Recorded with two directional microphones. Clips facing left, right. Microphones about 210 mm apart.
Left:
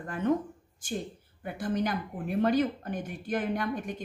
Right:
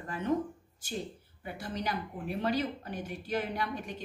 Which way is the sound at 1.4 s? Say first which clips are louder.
Left 6 dB; 50° left (ahead or behind).